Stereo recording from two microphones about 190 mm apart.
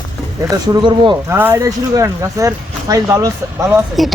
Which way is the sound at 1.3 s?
10° right (ahead or behind).